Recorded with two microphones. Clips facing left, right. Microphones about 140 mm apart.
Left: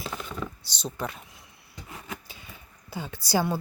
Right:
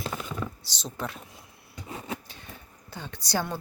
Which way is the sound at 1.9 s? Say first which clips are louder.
Right 4 dB; 30° right (ahead or behind).